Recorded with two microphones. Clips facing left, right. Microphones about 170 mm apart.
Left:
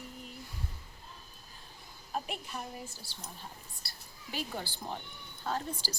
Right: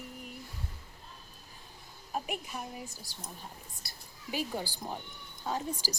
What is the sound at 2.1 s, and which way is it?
A woman's voice, 10° right (ahead or behind).